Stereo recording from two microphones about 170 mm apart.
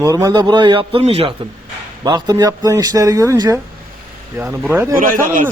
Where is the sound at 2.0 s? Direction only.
20° right (ahead or behind).